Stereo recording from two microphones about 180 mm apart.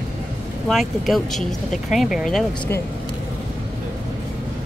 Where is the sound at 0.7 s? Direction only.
Centre (ahead or behind).